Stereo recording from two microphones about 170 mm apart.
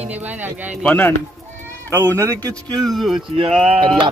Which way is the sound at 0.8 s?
10° left (ahead or behind).